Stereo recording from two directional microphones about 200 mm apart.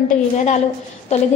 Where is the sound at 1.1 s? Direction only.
35° left (ahead or behind).